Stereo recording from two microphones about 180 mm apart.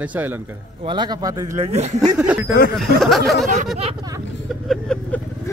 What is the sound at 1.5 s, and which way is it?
Speech, 40° right (ahead or behind).